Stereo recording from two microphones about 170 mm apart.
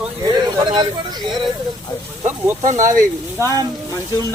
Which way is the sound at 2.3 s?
45° right (ahead or behind).